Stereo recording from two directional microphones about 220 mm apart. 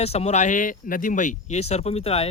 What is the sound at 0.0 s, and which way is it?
Speech, 30° left (ahead or behind).